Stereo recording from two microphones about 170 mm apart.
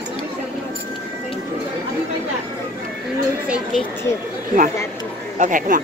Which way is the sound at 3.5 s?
Centre (ahead or behind).